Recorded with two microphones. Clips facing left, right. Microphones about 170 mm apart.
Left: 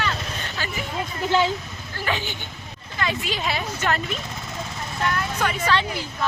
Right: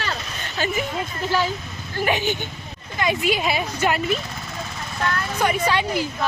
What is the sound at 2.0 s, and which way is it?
Speech, 15° right (ahead or behind).